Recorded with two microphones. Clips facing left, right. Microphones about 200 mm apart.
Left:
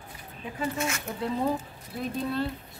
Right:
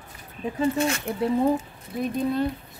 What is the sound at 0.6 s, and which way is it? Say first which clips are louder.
Speech: right 7 dB; 30° right (ahead or behind).